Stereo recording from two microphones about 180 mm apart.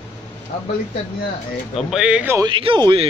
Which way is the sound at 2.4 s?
25° right (ahead or behind).